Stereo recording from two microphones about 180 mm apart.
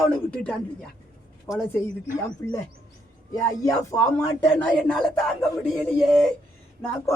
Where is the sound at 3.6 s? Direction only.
20° left (ahead or behind).